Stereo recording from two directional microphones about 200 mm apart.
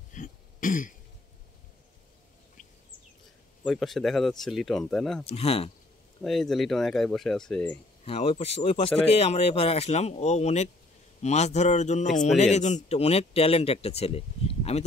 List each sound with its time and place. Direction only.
0.1 s throat clearing: 40° left (ahead or behind)
3.6 s speech: centre (ahead or behind)
5.2 s speech: 30° left (ahead or behind)
6.2 s speech: centre (ahead or behind)
8.0 s speech: 30° left (ahead or behind)